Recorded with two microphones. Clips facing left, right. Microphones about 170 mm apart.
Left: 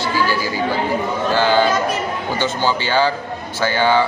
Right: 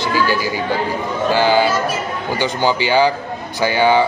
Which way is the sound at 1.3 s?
10° right (ahead or behind).